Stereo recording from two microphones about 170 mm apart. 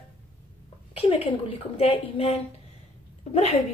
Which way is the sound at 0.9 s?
35° left (ahead or behind).